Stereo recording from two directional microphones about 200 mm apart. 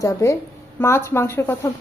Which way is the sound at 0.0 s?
15° left (ahead or behind).